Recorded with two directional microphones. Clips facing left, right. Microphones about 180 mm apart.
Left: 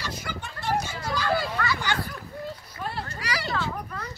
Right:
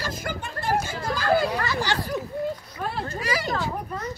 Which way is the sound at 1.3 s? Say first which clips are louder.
Right 4 dB; 35° right (ahead or behind).